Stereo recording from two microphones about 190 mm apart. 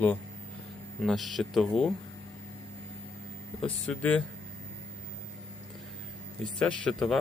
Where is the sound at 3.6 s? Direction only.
5° left (ahead or behind).